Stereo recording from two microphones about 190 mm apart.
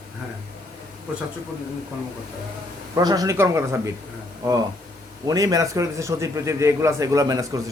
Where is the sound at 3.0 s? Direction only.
20° right (ahead or behind).